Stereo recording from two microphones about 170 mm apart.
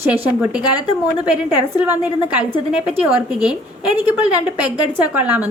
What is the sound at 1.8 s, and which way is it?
A woman's voice, 10° right (ahead or behind).